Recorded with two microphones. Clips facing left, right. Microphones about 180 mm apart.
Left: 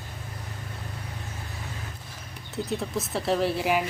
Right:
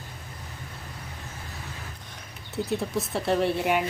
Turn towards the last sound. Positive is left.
turn(degrees=0)  # may be behind; listen again after turning